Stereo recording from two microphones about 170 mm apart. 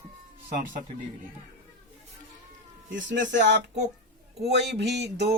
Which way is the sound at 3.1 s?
90° right.